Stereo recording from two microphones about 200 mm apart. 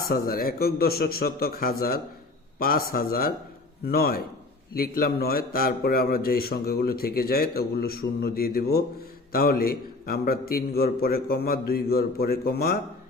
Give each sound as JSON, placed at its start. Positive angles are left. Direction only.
{"t": 0.0, "sound": "a man's voice", "side_deg": 45}